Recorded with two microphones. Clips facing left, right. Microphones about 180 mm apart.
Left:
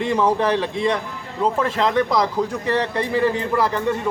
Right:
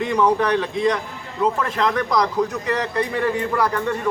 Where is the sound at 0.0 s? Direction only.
25° left (ahead or behind).